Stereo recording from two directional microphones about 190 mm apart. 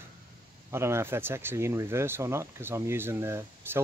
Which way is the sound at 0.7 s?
15° right (ahead or behind).